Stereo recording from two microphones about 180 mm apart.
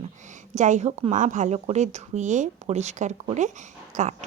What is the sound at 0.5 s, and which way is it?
A woman's voice, 40° right (ahead or behind).